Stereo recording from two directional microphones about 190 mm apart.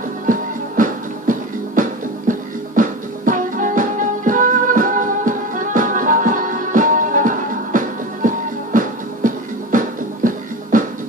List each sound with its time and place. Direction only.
0.3 s music: 45° right (ahead or behind)